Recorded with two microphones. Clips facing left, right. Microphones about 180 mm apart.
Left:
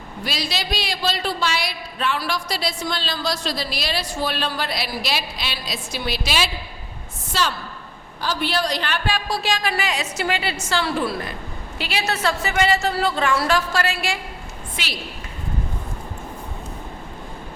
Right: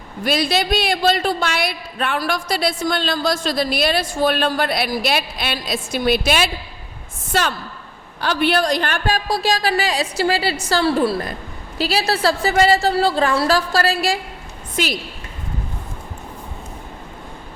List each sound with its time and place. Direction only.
0.3 s a woman's voice: 55° right (ahead or behind)
8.2 s a woman's voice: 65° right (ahead or behind); by 14.9 s 45° right (ahead or behind)